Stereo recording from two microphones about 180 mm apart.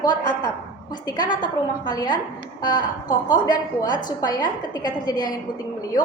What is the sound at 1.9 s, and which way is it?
A woman's voice, 25° left (ahead or behind).